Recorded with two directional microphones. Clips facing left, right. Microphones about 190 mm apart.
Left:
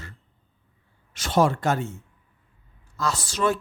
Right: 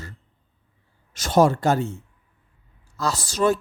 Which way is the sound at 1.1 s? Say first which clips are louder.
Right 3 dB; 45° right (ahead or behind).